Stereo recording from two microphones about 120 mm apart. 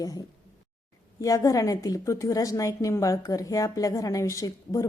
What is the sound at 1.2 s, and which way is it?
A woman's voice, 30° left (ahead or behind).